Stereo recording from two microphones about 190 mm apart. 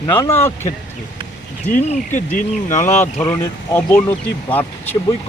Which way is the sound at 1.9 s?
40° left (ahead or behind).